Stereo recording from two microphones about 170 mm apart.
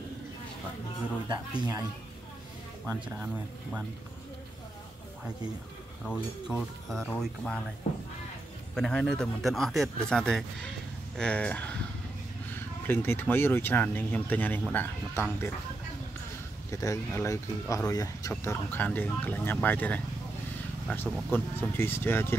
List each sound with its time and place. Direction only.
1.3 s speech: 20° right (ahead or behind)
6.0 s speech: centre (ahead or behind)
8.7 s speech: 5° left (ahead or behind)
16.7 s speech: 20° left (ahead or behind)